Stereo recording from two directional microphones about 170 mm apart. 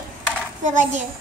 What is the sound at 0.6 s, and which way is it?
Speech, 45° right (ahead or behind).